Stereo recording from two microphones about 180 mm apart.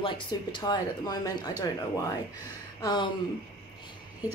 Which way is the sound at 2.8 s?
25° left (ahead or behind).